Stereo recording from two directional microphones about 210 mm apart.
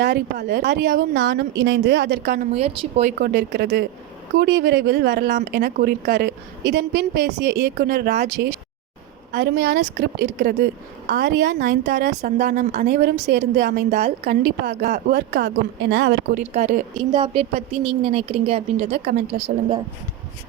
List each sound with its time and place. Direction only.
0.0 s speech: 50° right (ahead or behind)
2.5 s speech: 30° right (ahead or behind)
3.2 s speech: 50° right (ahead or behind)
16.5 s a woman's voice: 35° right (ahead or behind)
17.0 s speech: 20° right (ahead or behind)